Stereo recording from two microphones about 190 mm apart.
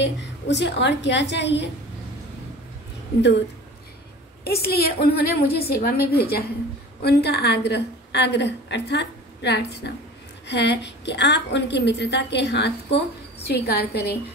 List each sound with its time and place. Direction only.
0.0 s a woman's voice: 65° left (ahead or behind)
3.2 s a woman's voice: 65° left (ahead or behind)
4.5 s a woman's voice: 55° left (ahead or behind)